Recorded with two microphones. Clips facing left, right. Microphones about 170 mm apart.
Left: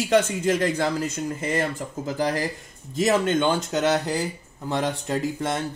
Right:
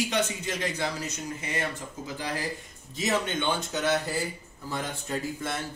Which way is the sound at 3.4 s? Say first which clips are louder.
Left 7 dB; 90° left.